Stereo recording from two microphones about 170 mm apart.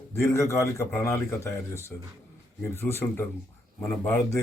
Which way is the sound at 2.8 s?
15° left (ahead or behind).